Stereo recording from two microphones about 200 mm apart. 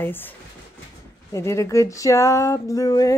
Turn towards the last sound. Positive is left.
turn(degrees=15)  # may be behind; listen again after turning